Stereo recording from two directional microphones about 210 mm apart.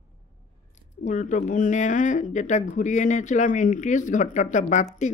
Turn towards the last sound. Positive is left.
turn(degrees=35)  # may be behind; listen again after turning